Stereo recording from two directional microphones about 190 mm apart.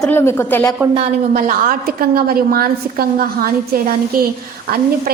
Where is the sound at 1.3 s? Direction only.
45° right (ahead or behind).